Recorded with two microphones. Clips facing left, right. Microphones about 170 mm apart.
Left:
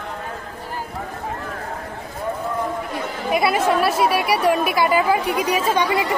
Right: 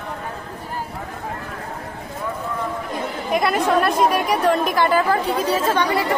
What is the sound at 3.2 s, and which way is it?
Speech, 5° left (ahead or behind).